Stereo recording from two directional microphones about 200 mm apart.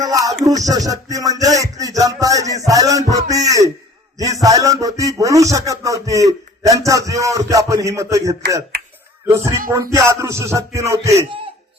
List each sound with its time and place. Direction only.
0.0 s music: 15° right (ahead or behind)
0.4 s a man's voice: 15° right (ahead or behind)
1.1 s music: 15° right (ahead or behind)
4.2 s a man's voice: 15° right (ahead or behind)